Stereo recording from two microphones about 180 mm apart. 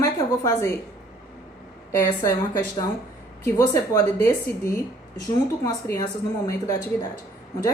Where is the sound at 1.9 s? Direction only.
20° left (ahead or behind).